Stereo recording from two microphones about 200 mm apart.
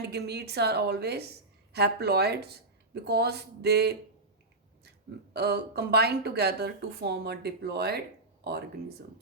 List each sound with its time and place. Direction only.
0.1 s speech: 55° right (ahead or behind)
5.3 s speech: 55° right (ahead or behind)